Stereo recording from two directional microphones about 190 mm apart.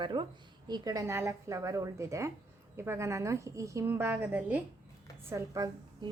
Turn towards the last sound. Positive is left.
turn(degrees=-20)  # may be behind; listen again after turning